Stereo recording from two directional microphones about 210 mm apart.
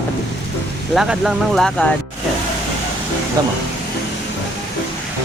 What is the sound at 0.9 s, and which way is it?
Speech, centre (ahead or behind).